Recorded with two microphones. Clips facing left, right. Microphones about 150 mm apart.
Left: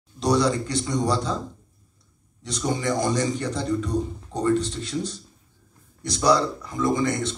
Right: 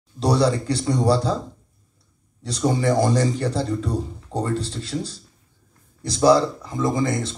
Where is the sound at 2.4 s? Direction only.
30° right (ahead or behind).